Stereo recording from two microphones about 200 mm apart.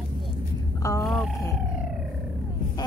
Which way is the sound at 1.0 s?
Centre (ahead or behind).